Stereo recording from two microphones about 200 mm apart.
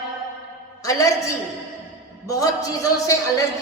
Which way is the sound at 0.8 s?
15° left (ahead or behind).